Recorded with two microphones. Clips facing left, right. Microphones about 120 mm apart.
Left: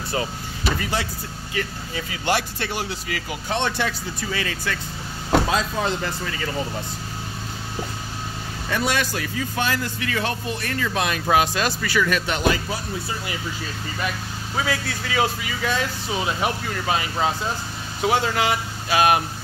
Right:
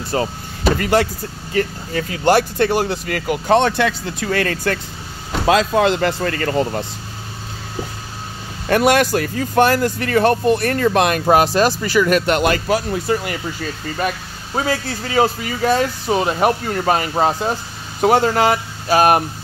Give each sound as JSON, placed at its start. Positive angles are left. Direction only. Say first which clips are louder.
{"t": 0.1, "sound": "vehicle", "louder": "right 6 dB", "side_deg": -40}
{"t": 0.7, "sound": "speech", "louder": "right 12 dB", "side_deg": -60}
{"t": 1.5, "sound": "speech", "louder": "right 9 dB", "side_deg": -45}
{"t": 5.5, "sound": "speech", "louder": "right 9 dB", "side_deg": -75}
{"t": 8.6, "sound": "speech", "louder": "right 10 dB", "side_deg": -60}
{"t": 11.2, "sound": "speech", "louder": "right 5 dB", "side_deg": -40}
{"t": 12.1, "sound": "speech", "louder": "right 6 dB", "side_deg": -60}
{"t": 13.9, "sound": "speech", "louder": "right 5 dB", "side_deg": -40}